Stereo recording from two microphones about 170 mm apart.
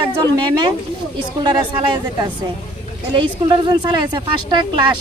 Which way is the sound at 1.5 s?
25° right (ahead or behind).